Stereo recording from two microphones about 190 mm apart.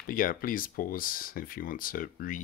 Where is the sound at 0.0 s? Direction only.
45° left (ahead or behind).